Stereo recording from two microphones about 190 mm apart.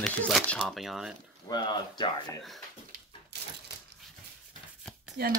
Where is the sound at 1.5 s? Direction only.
20° left (ahead or behind).